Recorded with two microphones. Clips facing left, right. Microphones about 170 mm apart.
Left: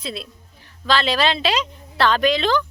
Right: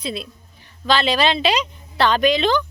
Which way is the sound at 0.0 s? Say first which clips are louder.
Right 3 dB; centre (ahead or behind).